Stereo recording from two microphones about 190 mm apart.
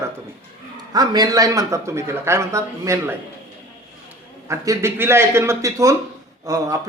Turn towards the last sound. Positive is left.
turn(degrees=-20)  # may be behind; listen again after turning